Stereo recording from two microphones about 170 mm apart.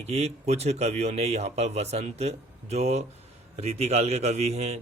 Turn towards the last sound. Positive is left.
turn(degrees=-40)  # may be behind; listen again after turning